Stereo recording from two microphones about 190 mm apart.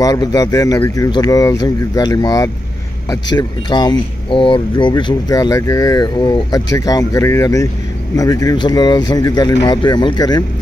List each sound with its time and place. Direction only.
0.0 s speech: 20° left (ahead or behind)